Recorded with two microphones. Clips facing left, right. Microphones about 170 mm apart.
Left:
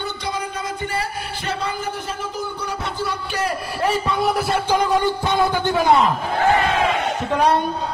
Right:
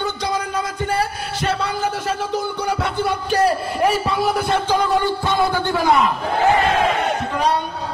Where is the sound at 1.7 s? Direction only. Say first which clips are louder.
Right 5 dB; 90° right; by 3.2 s 65° right (ahead or behind).